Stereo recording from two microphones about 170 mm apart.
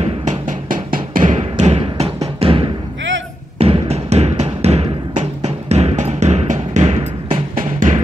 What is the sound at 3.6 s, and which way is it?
Music, 35° right (ahead or behind).